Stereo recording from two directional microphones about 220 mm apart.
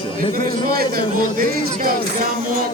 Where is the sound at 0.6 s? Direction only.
40° right (ahead or behind).